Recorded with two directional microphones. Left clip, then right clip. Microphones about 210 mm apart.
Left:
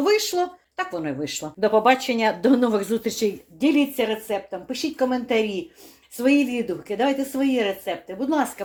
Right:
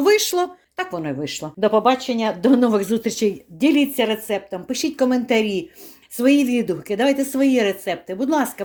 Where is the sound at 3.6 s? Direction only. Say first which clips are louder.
Right 3 dB; 40° right (ahead or behind).